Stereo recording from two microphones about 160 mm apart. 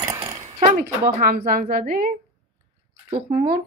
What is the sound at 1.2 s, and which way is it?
Speech, 60° right (ahead or behind).